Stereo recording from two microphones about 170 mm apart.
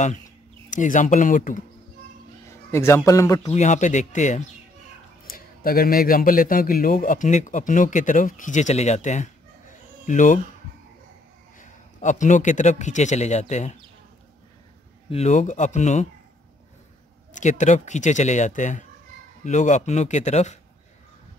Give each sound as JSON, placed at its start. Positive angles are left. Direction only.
{"t": 0.7, "sound": "a man's voice", "side_deg": 50}
{"t": 2.7, "sound": "a man's voice", "side_deg": 15}
{"t": 3.4, "sound": "a man's voice", "side_deg": 45}
{"t": 5.2, "sound": "a man's voice", "side_deg": 60}
{"t": 11.6, "sound": "a man's voice", "side_deg": 45}
{"t": 15.0, "sound": "a man's voice", "side_deg": 40}
{"t": 17.3, "sound": "a man's voice", "side_deg": 45}